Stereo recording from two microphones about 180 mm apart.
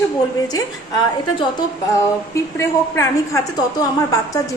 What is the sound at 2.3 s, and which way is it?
A woman's voice, 15° left (ahead or behind).